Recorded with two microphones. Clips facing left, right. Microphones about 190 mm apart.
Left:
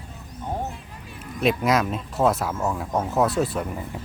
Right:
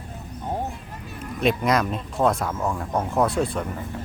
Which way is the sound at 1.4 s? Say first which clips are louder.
Even; centre (ahead or behind).